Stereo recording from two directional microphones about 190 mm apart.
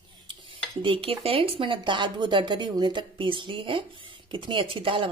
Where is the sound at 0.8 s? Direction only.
30° right (ahead or behind).